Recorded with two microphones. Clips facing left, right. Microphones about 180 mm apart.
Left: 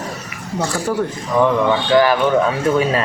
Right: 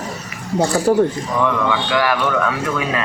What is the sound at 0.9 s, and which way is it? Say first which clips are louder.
Speech: right 7 dB; 30° right (ahead or behind).